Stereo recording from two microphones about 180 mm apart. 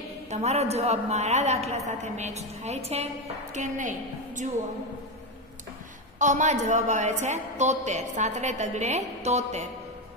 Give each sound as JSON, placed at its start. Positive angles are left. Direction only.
{"t": 0.3, "sound": "a woman's voice", "side_deg": -35}
{"t": 6.1, "sound": "a woman's voice", "side_deg": -45}